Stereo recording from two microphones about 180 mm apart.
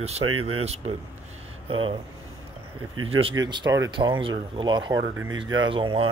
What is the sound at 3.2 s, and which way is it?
Speech, 25° right (ahead or behind).